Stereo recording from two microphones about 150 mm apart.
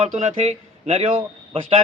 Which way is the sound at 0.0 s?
45° right (ahead or behind).